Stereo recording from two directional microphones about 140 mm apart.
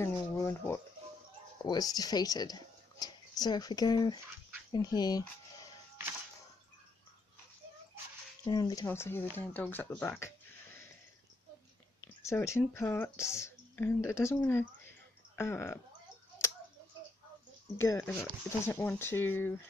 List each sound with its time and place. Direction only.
0.0 s a sound: 15° left (ahead or behind)
1.6 s speech: 30° left (ahead or behind)
8.5 s speech: 30° left (ahead or behind)
8.8 s speech: 15° left (ahead or behind)
12.2 s speech: 20° left (ahead or behind)
17.7 s speech: 20° left (ahead or behind)